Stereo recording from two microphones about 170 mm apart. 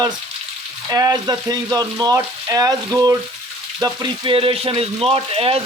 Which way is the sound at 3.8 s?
25° right (ahead or behind).